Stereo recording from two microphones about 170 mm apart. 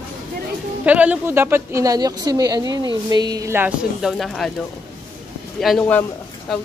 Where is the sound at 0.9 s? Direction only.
10° right (ahead or behind).